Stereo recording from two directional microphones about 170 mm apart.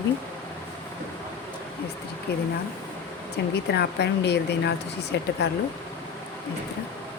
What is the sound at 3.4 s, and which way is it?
Speech, 90° left.